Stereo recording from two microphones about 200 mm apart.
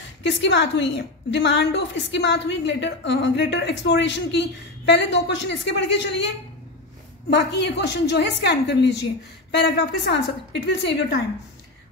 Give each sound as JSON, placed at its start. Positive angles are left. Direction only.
{"t": 0.2, "sound": "a woman's voice", "side_deg": 60}